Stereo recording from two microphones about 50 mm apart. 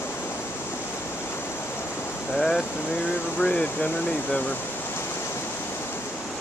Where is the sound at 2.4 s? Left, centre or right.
Centre.